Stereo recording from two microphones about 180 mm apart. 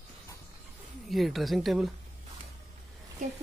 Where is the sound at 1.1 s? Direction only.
Centre (ahead or behind).